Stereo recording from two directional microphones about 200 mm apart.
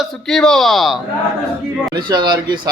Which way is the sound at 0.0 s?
Centre (ahead or behind).